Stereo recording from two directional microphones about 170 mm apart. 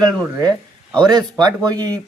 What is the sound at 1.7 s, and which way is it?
Speech, 25° right (ahead or behind).